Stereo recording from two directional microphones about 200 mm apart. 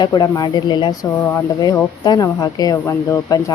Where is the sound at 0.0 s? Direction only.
20° left (ahead or behind).